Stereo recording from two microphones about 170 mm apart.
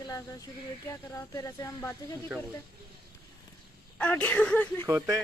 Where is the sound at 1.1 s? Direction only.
20° left (ahead or behind).